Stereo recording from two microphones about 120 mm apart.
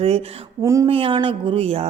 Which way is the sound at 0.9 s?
50° right (ahead or behind).